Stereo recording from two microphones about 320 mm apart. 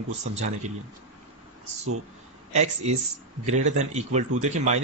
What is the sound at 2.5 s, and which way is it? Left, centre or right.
A man's voice, right.